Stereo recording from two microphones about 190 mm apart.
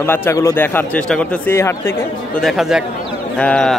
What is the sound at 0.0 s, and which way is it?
Speech, 10° left (ahead or behind).